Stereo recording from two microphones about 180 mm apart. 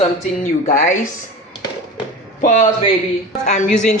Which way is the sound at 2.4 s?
45° left (ahead or behind).